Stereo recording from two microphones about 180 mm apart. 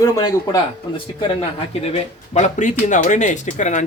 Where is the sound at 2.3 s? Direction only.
40° left (ahead or behind).